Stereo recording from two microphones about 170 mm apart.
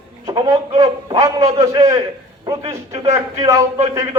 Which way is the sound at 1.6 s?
20° right (ahead or behind).